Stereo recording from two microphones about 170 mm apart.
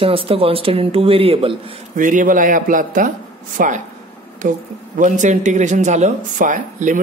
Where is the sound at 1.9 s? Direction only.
50° right (ahead or behind).